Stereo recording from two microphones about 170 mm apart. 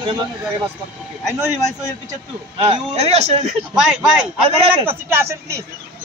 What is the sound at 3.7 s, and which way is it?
Speech, 5° right (ahead or behind).